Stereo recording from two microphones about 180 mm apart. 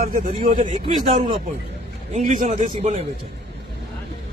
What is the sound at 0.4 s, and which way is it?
Speech, 45° right (ahead or behind).